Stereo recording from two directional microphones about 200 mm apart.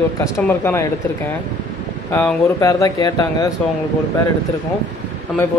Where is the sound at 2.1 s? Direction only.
5° left (ahead or behind).